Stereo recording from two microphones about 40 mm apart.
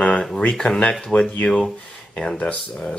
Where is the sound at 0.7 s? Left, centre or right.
Left.